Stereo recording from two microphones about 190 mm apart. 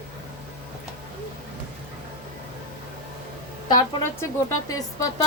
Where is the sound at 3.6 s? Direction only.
15° left (ahead or behind).